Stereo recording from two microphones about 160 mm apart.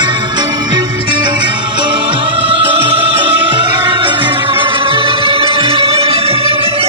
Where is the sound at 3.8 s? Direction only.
30° right (ahead or behind).